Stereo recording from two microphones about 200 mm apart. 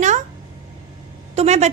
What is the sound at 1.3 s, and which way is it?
Speech, 30° right (ahead or behind).